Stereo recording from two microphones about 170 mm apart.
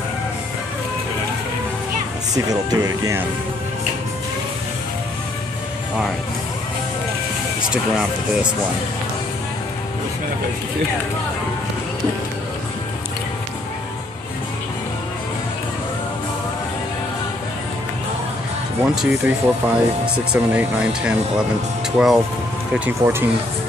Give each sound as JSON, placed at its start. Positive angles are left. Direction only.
{"t": 2.3, "sound": "speech", "side_deg": -20}
{"t": 7.7, "sound": "speech", "side_deg": -5}
{"t": 18.8, "sound": "speech", "side_deg": -5}